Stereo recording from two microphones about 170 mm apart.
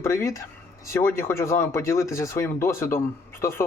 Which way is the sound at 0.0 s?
15° left (ahead or behind).